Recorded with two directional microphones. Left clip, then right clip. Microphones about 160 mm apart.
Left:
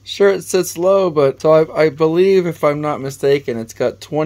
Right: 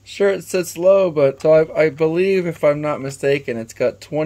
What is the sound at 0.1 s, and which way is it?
Speech, 30° left (ahead or behind).